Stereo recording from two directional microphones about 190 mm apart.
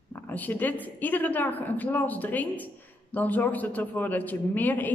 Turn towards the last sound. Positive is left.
turn(degrees=10)  # may be behind; listen again after turning